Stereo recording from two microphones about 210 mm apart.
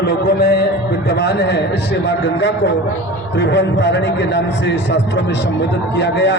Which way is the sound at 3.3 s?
60° left (ahead or behind).